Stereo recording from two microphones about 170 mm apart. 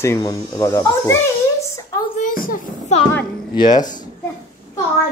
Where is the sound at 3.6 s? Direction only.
25° left (ahead or behind).